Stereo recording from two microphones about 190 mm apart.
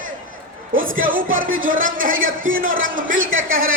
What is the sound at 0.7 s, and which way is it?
Speech, 45° right (ahead or behind).